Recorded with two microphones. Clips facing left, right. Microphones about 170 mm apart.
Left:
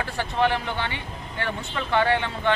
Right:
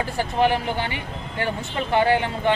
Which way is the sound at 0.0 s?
15° right (ahead or behind).